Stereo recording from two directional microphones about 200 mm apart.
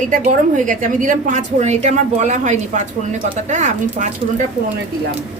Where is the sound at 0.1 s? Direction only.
40° right (ahead or behind).